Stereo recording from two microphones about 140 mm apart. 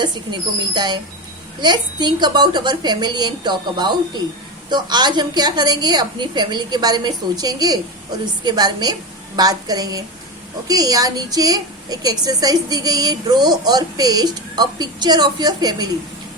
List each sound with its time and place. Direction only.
0.0 s a woman's voice: 30° right (ahead or behind)